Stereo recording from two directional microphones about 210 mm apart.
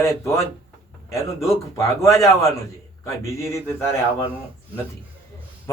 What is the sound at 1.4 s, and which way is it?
A man's voice, 15° left (ahead or behind).